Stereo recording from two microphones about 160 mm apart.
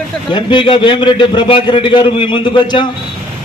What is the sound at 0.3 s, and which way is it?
A man's voice, 30° left (ahead or behind).